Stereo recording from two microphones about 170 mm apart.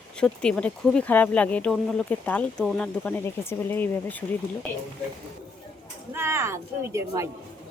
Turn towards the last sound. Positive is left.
turn(degrees=-15)  # may be behind; listen again after turning